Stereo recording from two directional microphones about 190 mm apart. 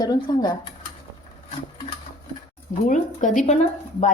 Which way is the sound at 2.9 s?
40° left (ahead or behind).